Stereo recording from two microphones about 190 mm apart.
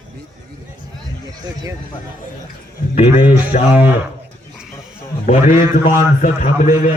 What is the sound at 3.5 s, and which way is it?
Speech, 40° left (ahead or behind).